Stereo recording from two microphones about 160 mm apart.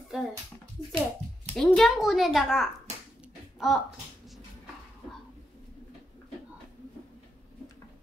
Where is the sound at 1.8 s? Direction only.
Centre (ahead or behind).